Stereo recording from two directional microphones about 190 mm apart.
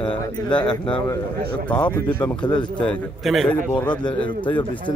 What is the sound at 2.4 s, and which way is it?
Speech, 25° left (ahead or behind).